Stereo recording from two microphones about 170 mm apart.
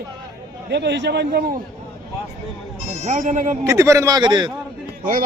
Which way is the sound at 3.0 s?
45° right (ahead or behind).